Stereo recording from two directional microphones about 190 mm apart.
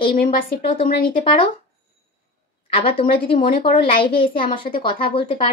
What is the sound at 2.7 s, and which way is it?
Speech, 30° left (ahead or behind).